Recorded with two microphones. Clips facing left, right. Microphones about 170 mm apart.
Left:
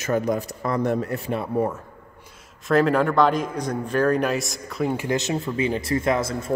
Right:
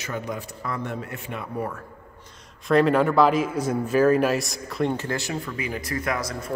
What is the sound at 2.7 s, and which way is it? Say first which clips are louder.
Speech: even; centre (ahead or behind).